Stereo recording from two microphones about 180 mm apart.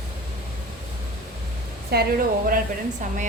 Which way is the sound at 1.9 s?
60° right (ahead or behind).